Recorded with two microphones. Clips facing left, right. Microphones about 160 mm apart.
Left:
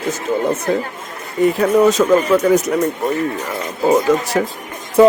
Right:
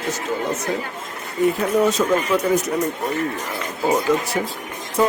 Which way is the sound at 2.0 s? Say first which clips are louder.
Left 6 dB; 85° left.